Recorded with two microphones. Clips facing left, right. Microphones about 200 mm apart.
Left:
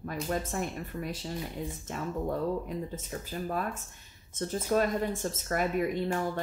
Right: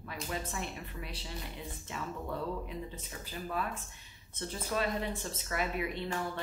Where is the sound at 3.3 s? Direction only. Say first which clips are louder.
Left 3 dB; 45° left (ahead or behind).